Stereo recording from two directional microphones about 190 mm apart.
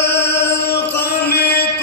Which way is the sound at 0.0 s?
65° left (ahead or behind).